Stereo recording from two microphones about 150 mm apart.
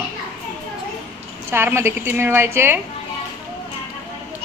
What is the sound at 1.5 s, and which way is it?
A woman's voice, 15° right (ahead or behind).